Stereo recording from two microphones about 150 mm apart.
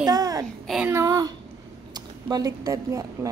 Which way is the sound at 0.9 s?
25° right (ahead or behind).